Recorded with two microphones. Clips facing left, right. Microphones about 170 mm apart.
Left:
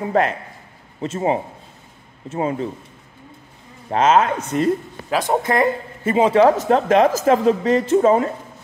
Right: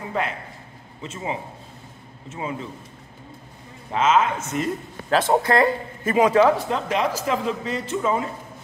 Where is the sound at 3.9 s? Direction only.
40° left (ahead or behind).